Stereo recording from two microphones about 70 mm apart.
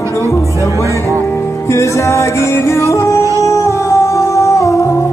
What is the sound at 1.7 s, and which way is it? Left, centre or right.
Music, left.